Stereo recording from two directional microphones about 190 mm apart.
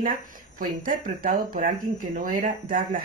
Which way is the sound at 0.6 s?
45° right (ahead or behind).